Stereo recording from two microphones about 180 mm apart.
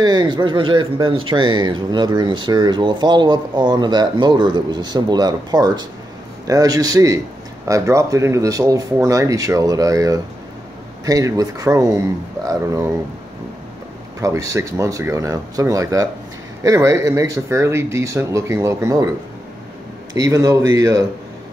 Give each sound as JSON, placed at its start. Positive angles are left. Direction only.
{"t": 0.0, "sound": "speech", "side_deg": -25}
{"t": 14.2, "sound": "speech", "side_deg": -15}
{"t": 20.2, "sound": "speech", "side_deg": -20}